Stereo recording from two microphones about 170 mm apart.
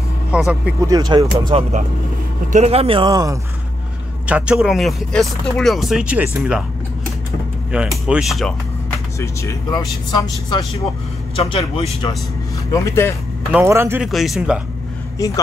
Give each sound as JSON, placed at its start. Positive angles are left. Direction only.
{"t": 0.3, "sound": "speech", "side_deg": -5}
{"t": 0.7, "sound": "speech", "side_deg": -20}
{"t": 2.5, "sound": "speech", "side_deg": -35}
{"t": 3.1, "sound": "speech", "side_deg": -20}
{"t": 4.3, "sound": "speech", "side_deg": -5}
{"t": 7.7, "sound": "speech", "side_deg": -5}
{"t": 9.2, "sound": "a man's voice", "side_deg": 15}
{"t": 12.7, "sound": "speech", "side_deg": 15}
{"t": 13.5, "sound": "speech", "side_deg": -10}
{"t": 14.0, "sound": "speech", "side_deg": 0}